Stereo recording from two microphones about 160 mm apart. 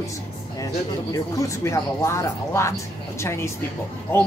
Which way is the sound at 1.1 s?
20° left (ahead or behind).